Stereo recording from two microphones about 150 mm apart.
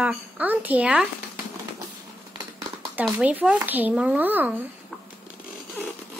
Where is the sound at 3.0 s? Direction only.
10° right (ahead or behind).